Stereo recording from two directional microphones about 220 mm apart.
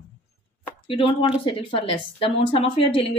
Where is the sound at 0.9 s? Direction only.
25° left (ahead or behind).